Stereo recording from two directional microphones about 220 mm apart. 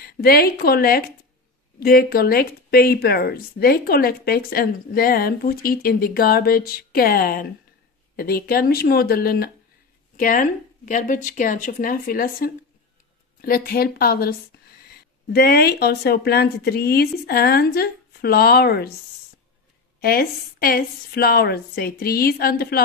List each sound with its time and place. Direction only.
0.0 s speech: 45° left (ahead or behind)
15.3 s speech: 45° left (ahead or behind)
20.0 s speech: 45° left (ahead or behind)